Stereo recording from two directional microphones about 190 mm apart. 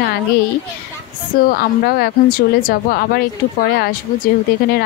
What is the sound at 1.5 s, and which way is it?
Speech, 55° left (ahead or behind).